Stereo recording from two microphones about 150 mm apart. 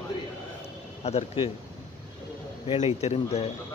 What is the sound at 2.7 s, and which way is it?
Speech, 45° left (ahead or behind).